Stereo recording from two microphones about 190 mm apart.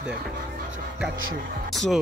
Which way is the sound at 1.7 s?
Centre (ahead or behind).